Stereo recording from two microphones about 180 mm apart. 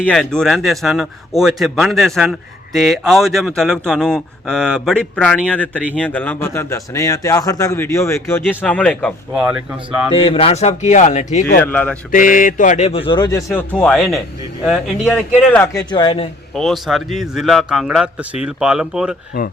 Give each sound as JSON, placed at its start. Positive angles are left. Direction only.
{"t": 0.0, "sound": "speech", "side_deg": 5}
{"t": 10.2, "sound": "speech", "side_deg": 30}
{"t": 11.6, "sound": "speech", "side_deg": 10}
{"t": 12.1, "sound": "speech", "side_deg": 50}
{"t": 13.5, "sound": "speech", "side_deg": 10}
{"t": 15.4, "sound": "speech", "side_deg": 10}
{"t": 15.9, "sound": "a man's voice", "side_deg": 25}
{"t": 16.6, "sound": "speech", "side_deg": 0}
{"t": 19.3, "sound": "speech", "side_deg": 55}